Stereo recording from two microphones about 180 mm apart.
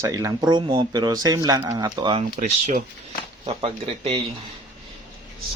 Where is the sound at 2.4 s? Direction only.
40° right (ahead or behind).